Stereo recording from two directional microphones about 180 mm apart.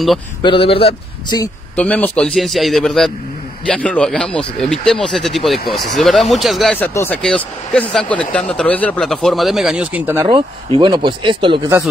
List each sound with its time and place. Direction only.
0.4 s a man's voice: 30° left (ahead or behind)
1.8 s speech: 10° left (ahead or behind); by 10.2 s 10° right (ahead or behind)
10.8 s speech: 25° right (ahead or behind)